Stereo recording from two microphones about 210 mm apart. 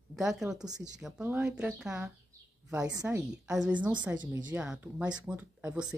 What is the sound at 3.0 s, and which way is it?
Speech, 5° right (ahead or behind).